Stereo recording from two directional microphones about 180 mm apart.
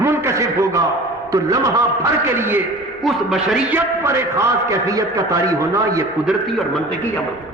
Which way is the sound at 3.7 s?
15° right (ahead or behind).